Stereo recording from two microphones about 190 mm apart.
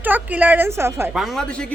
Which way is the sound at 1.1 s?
Centre (ahead or behind).